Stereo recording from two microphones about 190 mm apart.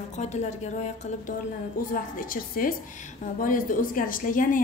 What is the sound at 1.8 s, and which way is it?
A woman's voice, 45° left (ahead or behind).